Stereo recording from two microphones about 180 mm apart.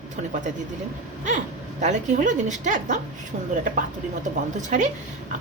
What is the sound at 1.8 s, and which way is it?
A woman's voice, 40° right (ahead or behind).